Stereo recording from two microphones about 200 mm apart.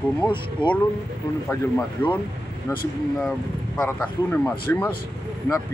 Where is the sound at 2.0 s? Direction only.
10° left (ahead or behind).